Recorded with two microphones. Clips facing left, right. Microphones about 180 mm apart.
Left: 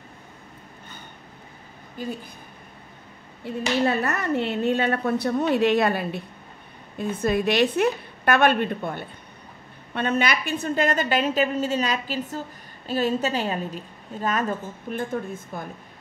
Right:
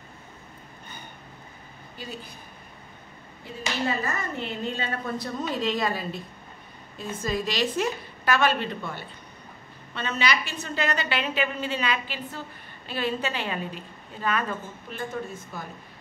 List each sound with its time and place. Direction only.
3.8 s a woman's voice: 70° left (ahead or behind); by 15.6 s 50° left (ahead or behind)